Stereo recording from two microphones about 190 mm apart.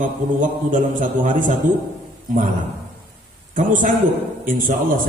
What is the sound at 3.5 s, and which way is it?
Speech, 45° right (ahead or behind).